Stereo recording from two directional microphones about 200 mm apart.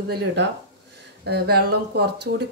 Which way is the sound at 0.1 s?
55° right (ahead or behind).